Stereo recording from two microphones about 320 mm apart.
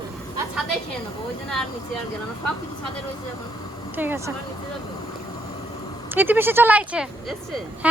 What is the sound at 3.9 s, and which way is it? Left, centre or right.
Speech, centre.